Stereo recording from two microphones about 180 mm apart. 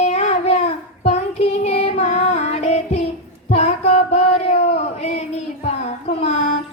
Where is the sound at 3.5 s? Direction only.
35° left (ahead or behind).